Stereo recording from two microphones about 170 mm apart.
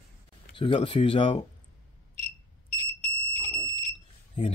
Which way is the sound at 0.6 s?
30° left (ahead or behind).